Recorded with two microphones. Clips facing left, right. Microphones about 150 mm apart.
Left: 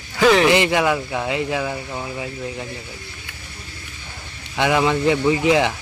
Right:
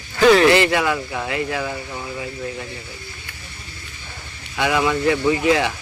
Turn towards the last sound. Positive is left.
turn(degrees=20)  # may be behind; listen again after turning